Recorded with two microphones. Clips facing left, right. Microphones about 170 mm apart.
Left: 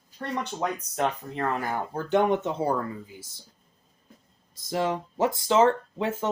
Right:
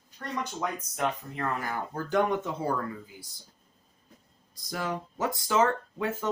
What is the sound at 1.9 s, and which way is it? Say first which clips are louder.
Speech: left 4 dB; 25° left (ahead or behind).